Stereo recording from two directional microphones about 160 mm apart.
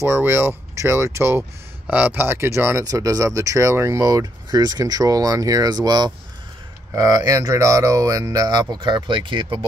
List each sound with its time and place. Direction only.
0.0 s speech: 15° right (ahead or behind); by 9.6 s 30° right (ahead or behind)